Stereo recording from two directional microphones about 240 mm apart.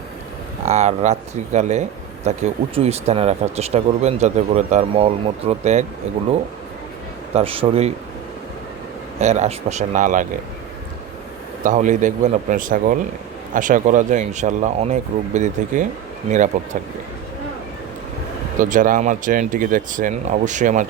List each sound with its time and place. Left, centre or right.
0.6 s speech: right
7.3 s speech: right
9.2 s speech: right
11.6 s speech: right
18.6 s speech: right